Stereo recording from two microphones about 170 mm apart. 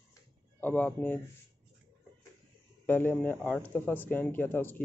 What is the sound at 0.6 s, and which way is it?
Speech, 10° left (ahead or behind).